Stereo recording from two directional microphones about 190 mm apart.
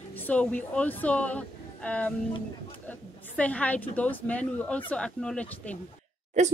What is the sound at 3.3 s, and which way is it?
Speech, 5° left (ahead or behind).